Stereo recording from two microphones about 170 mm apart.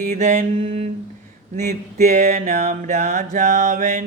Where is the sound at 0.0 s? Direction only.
45° right (ahead or behind).